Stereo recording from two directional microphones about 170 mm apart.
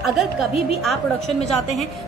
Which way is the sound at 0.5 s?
35° left (ahead or behind).